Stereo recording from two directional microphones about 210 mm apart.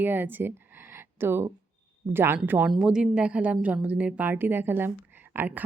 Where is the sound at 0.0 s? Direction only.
10° right (ahead or behind).